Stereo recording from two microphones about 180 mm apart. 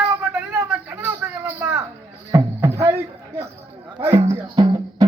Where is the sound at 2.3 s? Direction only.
15° right (ahead or behind).